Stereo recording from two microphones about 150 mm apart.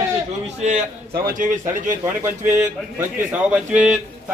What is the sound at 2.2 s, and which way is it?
A man's voice, 15° right (ahead or behind).